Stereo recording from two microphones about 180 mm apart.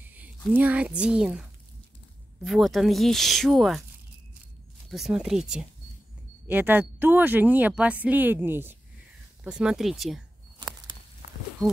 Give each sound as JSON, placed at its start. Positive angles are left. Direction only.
{"t": 0.6, "sound": "speech", "side_deg": -10}
{"t": 4.8, "sound": "speech", "side_deg": 0}